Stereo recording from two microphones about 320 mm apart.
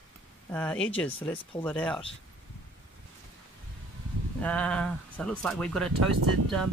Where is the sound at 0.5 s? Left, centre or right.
Centre.